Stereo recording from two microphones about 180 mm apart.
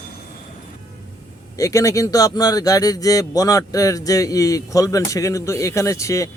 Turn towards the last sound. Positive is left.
turn(degrees=15)  # may be behind; listen again after turning